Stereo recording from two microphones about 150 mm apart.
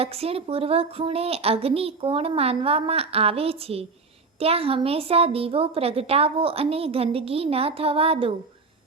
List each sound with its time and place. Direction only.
0.0 s a woman's voice: 40° right (ahead or behind)